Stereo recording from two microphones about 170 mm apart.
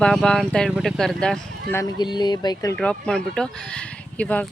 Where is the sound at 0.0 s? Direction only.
5° left (ahead or behind).